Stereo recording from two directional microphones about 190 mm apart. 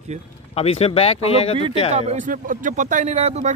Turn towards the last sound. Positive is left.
turn(degrees=-35)  # may be behind; listen again after turning